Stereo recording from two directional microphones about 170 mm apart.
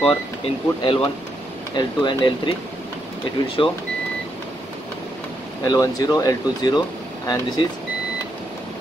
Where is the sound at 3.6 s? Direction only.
30° left (ahead or behind).